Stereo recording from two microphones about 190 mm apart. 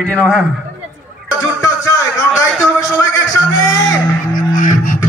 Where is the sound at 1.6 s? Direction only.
15° left (ahead or behind).